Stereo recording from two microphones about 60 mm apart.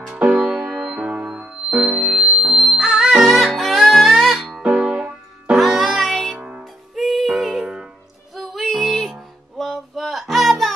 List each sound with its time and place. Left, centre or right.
0.0 s music: centre
4.6 s music: centre
5.6 s music: centre
6.3 s music: centre
7.0 s music: centre